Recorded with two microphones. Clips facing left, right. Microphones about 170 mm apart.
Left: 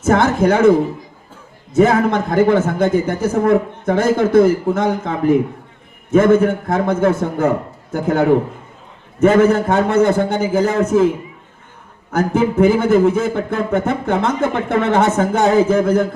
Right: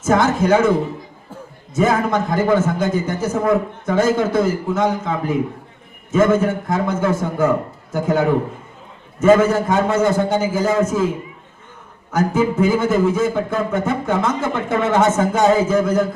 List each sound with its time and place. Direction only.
0.0 s speech: 60° left (ahead or behind)
1.7 s speech: 60° left (ahead or behind)
12.1 s speech: 60° left (ahead or behind)